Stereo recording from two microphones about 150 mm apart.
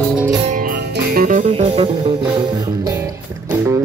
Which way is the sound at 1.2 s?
60° right (ahead or behind).